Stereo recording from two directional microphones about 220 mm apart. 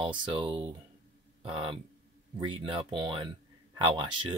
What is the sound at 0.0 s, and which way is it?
Speech, 20° right (ahead or behind).